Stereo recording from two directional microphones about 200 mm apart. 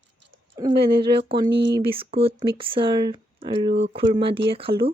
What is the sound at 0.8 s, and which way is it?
Speech, 25° right (ahead or behind).